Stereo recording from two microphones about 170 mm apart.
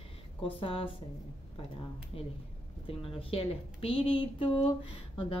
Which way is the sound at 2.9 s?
35° left (ahead or behind).